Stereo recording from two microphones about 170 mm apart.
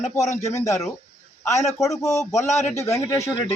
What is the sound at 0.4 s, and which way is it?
Speech, 20° left (ahead or behind).